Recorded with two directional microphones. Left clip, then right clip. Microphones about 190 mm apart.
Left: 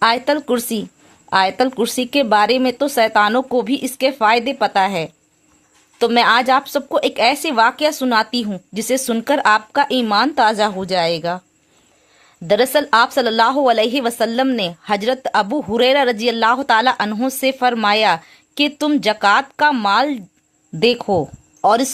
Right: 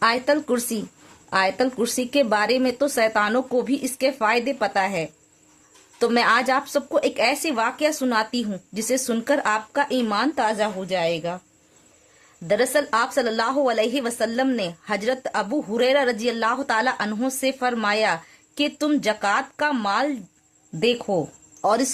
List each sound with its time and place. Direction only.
0.0 s speech: 25° left (ahead or behind)
12.5 s speech: 25° left (ahead or behind)